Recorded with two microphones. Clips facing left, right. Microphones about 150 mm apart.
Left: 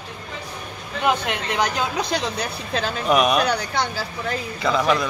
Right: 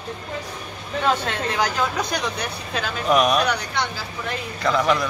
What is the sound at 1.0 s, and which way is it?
Speech, 15° left (ahead or behind).